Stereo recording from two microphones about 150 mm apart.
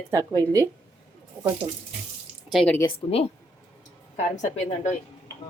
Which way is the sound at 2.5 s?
10° left (ahead or behind).